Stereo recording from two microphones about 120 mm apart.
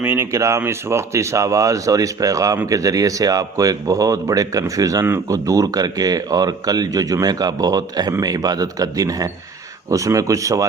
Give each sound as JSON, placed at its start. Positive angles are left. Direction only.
{"t": 0.0, "sound": "speech", "side_deg": -20}